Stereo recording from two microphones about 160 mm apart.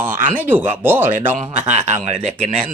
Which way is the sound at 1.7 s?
45° right (ahead or behind).